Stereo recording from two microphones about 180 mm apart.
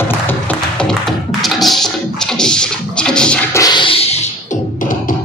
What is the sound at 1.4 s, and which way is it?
Music, centre (ahead or behind).